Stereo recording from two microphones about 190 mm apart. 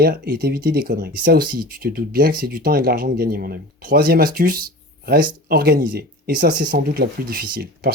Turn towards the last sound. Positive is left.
turn(degrees=-55)  # may be behind; listen again after turning